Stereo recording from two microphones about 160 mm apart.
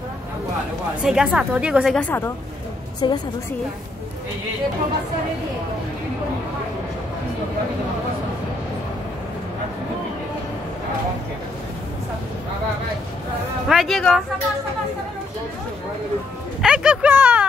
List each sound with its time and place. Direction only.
1.0 s a woman's voice: 5° right (ahead or behind)
2.0 s a woman's voice: 10° left (ahead or behind)
3.0 s a woman's voice: 30° left (ahead or behind)
13.7 s a woman's voice: centre (ahead or behind)
16.6 s a sound: 5° right (ahead or behind)